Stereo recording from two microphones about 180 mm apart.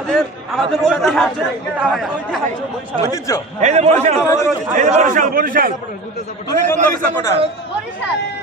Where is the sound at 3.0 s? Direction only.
20° left (ahead or behind).